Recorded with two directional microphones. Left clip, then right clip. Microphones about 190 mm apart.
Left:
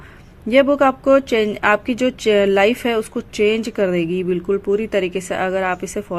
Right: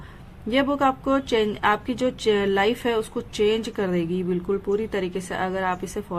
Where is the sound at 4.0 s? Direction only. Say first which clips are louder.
Left 6 dB; 25° right (ahead or behind).